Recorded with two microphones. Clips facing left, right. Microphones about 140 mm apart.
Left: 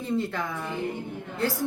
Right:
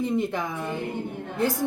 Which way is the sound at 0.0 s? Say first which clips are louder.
Right 3 dB; 15° right (ahead or behind).